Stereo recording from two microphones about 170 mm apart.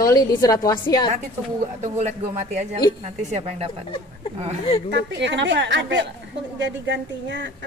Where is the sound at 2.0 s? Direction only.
40° right (ahead or behind).